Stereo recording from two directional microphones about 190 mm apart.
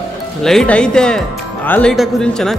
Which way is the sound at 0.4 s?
Centre (ahead or behind).